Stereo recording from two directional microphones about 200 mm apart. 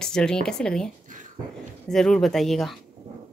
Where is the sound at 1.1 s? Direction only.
40° right (ahead or behind).